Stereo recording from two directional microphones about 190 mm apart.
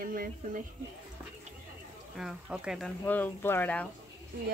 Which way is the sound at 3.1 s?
10° left (ahead or behind).